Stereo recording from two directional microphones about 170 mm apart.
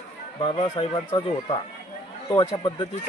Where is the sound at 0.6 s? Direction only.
25° left (ahead or behind).